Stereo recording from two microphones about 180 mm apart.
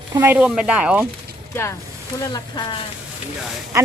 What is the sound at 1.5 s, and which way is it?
Speech, 15° left (ahead or behind).